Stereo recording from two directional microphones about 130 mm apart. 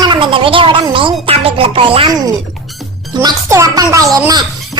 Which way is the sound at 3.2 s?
25° right (ahead or behind).